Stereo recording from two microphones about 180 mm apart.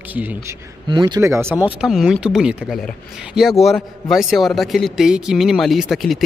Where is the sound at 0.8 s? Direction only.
25° right (ahead or behind).